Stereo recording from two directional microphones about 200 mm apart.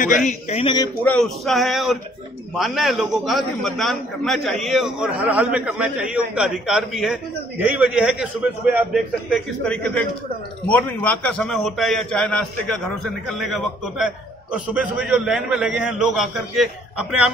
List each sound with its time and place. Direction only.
0.0 s speech: 40° left (ahead or behind)
1.0 s a man's voice: 5° left (ahead or behind)